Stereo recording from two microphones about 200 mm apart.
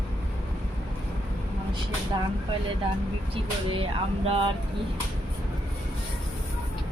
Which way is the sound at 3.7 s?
30° right (ahead or behind).